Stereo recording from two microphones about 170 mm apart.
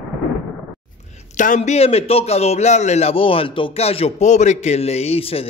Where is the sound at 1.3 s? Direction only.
45° left (ahead or behind).